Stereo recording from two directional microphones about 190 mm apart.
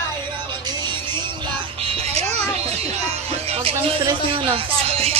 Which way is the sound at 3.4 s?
30° right (ahead or behind).